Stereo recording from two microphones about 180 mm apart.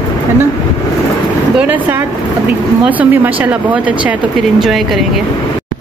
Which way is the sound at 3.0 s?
10° right (ahead or behind).